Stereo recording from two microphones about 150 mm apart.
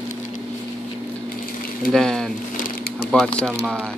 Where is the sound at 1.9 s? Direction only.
5° left (ahead or behind).